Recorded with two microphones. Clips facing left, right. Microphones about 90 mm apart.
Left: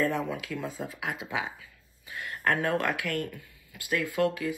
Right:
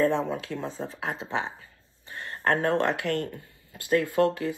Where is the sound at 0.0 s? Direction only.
30° right (ahead or behind).